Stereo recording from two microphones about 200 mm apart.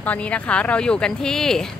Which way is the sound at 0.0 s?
5° left (ahead or behind).